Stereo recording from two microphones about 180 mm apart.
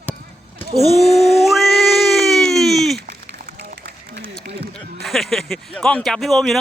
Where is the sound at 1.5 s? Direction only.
Centre (ahead or behind).